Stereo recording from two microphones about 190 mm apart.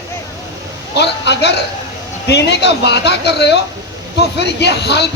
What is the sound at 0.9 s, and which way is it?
Speech, 65° left (ahead or behind).